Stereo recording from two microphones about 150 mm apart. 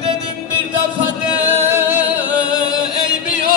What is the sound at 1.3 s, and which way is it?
Singing, 15° right (ahead or behind).